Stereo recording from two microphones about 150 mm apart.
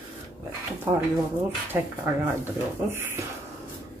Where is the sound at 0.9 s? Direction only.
20° right (ahead or behind).